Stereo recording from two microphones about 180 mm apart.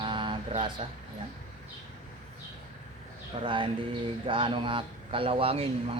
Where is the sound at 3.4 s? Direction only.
25° right (ahead or behind).